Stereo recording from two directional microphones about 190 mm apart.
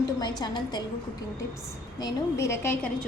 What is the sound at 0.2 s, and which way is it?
Speech, 20° left (ahead or behind).